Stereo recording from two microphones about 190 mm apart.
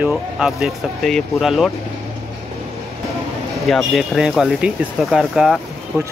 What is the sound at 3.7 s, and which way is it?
Speech, centre (ahead or behind).